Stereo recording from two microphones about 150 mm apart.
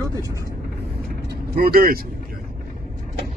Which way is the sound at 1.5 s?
85° right.